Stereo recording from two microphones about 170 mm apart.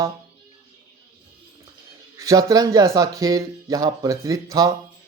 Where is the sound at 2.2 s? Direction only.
20° right (ahead or behind).